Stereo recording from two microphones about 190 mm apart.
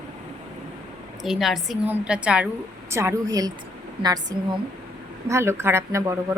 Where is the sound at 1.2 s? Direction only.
Centre (ahead or behind).